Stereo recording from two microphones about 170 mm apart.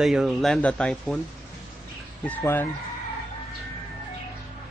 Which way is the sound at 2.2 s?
10° left (ahead or behind).